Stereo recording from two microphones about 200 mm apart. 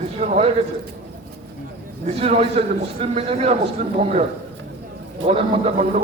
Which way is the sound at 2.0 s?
30° right (ahead or behind).